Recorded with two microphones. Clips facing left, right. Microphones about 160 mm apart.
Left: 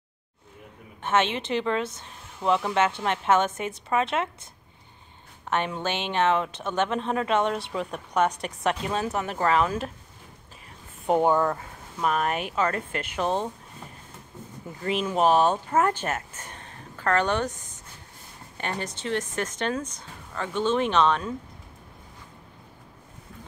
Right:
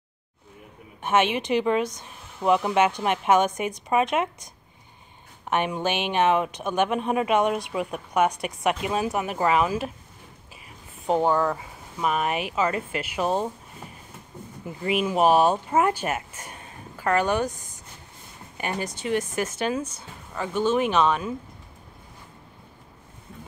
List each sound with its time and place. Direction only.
1.0 s speech: 15° right (ahead or behind)
5.5 s speech: 15° right (ahead or behind)
11.1 s speech: 5° left (ahead or behind); by 13.5 s 10° right (ahead or behind)
14.8 s speech: 10° right (ahead or behind)
18.6 s speech: 10° right (ahead or behind)